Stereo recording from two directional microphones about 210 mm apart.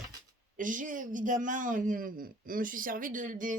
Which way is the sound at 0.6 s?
40° right (ahead or behind).